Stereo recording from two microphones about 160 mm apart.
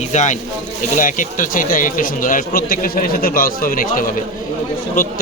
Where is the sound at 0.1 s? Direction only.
50° left (ahead or behind).